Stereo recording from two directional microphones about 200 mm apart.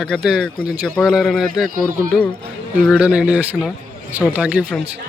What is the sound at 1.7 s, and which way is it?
Speech, 45° right (ahead or behind).